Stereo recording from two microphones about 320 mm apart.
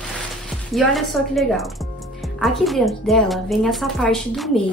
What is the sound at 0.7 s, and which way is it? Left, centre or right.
A woman's voice, centre.